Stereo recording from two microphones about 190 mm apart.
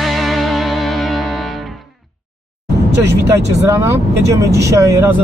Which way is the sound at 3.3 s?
15° right (ahead or behind).